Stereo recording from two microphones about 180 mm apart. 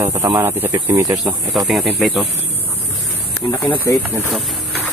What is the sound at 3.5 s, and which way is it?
Speech, 10° left (ahead or behind).